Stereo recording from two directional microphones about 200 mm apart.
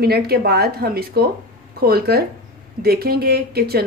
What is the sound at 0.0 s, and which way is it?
A woman's voice, 50° right (ahead or behind).